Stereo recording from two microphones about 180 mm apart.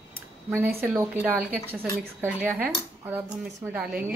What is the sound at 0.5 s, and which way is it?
Speech, 10° right (ahead or behind).